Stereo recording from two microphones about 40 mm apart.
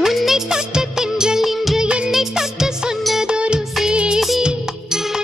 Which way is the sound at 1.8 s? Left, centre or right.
Right.